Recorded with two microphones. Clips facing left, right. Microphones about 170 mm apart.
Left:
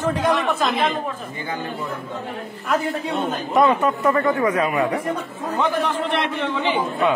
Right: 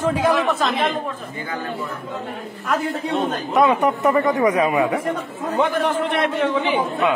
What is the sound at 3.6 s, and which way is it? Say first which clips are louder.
Speech: right 1 dB; 15° right (ahead or behind).